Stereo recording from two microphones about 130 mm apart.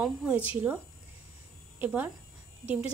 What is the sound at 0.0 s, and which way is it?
Speech, 5° right (ahead or behind).